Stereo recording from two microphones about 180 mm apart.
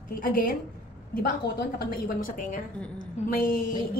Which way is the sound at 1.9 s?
50° left (ahead or behind).